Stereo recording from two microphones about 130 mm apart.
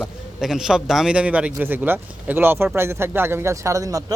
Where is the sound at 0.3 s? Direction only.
5° right (ahead or behind).